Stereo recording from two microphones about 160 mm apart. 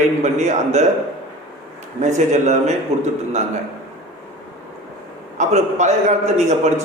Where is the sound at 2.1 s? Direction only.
45° right (ahead or behind).